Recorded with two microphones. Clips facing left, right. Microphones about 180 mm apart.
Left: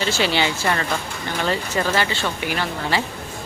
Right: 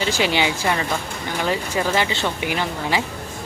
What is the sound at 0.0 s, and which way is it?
Speech, 15° right (ahead or behind).